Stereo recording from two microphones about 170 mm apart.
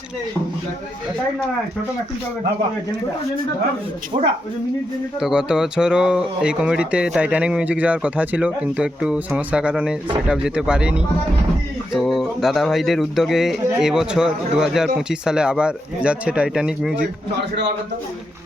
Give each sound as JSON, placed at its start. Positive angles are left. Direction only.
{"t": 4.1, "sound": "speech", "side_deg": -40}
{"t": 5.2, "sound": "speech", "side_deg": -5}